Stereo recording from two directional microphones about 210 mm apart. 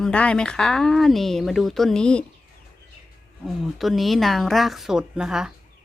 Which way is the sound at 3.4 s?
Centre (ahead or behind).